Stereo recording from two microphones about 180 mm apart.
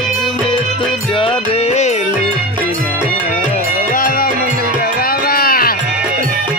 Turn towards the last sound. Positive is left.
turn(degrees=55)  # may be behind; listen again after turning